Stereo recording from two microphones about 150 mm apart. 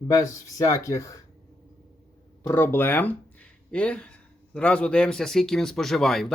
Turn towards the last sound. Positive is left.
turn(degrees=0)  # may be behind; listen again after turning